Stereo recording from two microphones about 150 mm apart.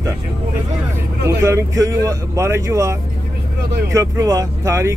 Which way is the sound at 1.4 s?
20° right (ahead or behind).